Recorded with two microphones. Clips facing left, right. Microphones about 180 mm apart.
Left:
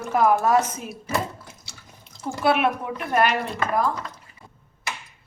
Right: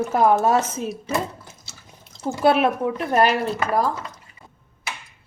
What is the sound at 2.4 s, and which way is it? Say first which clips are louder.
Speech: right 3 dB; 35° right (ahead or behind).